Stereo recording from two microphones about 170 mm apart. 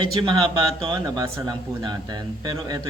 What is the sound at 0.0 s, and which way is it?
Speech, 30° right (ahead or behind).